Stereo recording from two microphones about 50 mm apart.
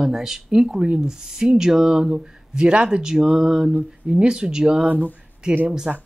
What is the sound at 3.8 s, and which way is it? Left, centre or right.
Speech, right.